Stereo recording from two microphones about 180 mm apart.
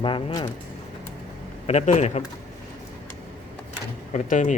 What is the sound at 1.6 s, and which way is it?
Speech, 35° left (ahead or behind).